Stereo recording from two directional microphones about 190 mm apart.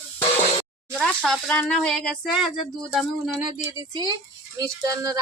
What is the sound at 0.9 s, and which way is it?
Speech, 5° left (ahead or behind).